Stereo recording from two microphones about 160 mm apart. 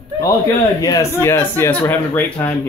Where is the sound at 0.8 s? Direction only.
20° left (ahead or behind).